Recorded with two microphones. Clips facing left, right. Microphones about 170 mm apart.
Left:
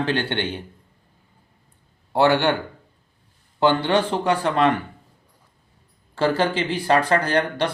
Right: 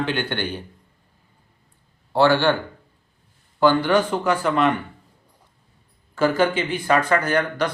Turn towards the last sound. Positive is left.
turn(degrees=30)  # may be behind; listen again after turning